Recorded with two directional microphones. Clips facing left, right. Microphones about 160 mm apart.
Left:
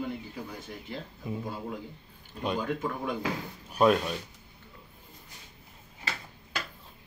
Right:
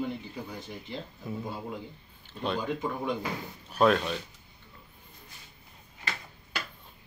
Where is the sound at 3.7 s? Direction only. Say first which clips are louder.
Even; 10° left (ahead or behind).